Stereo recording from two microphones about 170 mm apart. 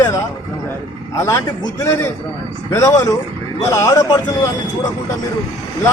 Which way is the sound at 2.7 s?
20° left (ahead or behind).